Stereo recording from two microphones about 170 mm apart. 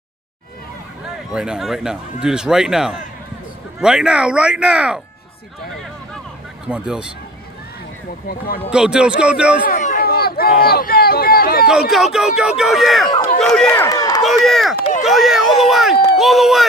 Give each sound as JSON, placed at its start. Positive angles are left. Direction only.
{"t": 1.3, "sound": "speech", "side_deg": -5}
{"t": 6.7, "sound": "speech", "side_deg": -5}
{"t": 8.6, "sound": "speech", "side_deg": -5}
{"t": 9.6, "sound": "speech", "side_deg": 50}
{"t": 11.9, "sound": "speech", "side_deg": -5}
{"t": 13.8, "sound": "a sound", "side_deg": 20}
{"t": 14.2, "sound": "speech", "side_deg": 0}